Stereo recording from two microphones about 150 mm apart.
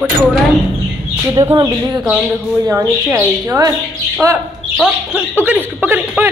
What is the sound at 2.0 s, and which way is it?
Speech, 5° right (ahead or behind).